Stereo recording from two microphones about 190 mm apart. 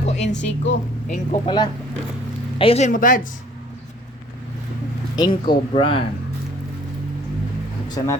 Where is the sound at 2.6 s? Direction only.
35° left (ahead or behind).